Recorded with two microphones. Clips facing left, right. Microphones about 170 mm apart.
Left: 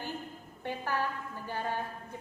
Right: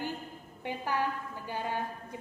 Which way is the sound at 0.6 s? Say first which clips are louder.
Right 1 dB; 15° right (ahead or behind).